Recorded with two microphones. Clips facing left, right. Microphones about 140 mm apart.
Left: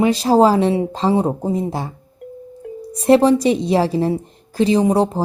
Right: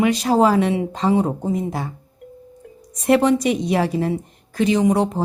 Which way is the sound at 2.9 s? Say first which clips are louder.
Left 4 dB; 30° left (ahead or behind).